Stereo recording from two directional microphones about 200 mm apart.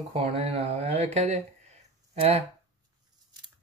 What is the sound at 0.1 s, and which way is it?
Speech, 30° right (ahead or behind).